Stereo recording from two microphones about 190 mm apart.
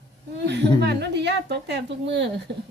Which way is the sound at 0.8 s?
60° right (ahead or behind).